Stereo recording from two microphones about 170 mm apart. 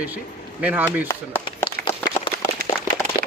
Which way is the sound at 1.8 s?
55° right (ahead or behind).